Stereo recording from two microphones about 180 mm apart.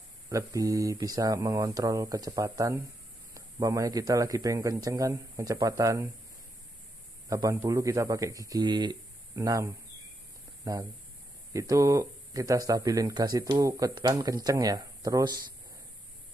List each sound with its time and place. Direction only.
0.3 s speech: 20° right (ahead or behind)
7.2 s speech: 20° right (ahead or behind)